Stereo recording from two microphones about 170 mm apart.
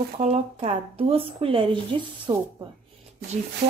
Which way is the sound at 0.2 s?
40° right (ahead or behind).